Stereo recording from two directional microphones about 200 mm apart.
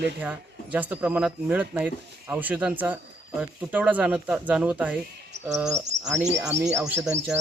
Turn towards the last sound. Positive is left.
turn(degrees=-10)  # may be behind; listen again after turning